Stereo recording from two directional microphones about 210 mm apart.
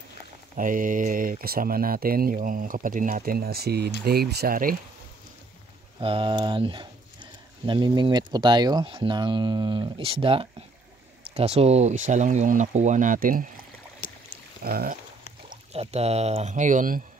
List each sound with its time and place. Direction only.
0.6 s speech: 40° right (ahead or behind)
5.9 s speech: 25° right (ahead or behind); by 13.5 s 40° right (ahead or behind)
14.0 s boat: 40° left (ahead or behind)
14.6 s speech: 45° right (ahead or behind)
15.5 s speech: 30° right (ahead or behind)